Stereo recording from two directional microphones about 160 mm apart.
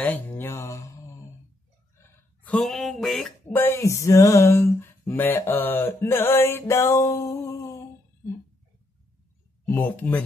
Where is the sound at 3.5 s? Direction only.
15° left (ahead or behind).